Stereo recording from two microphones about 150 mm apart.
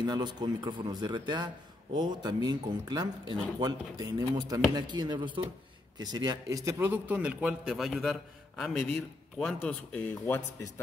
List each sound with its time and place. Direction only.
0.0 s a man's voice: 30° right (ahead or behind); by 10.4 s 10° left (ahead or behind)